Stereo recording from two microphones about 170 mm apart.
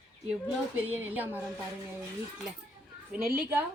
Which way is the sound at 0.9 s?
10° right (ahead or behind).